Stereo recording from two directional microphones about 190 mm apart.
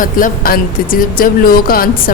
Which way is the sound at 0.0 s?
50° left (ahead or behind).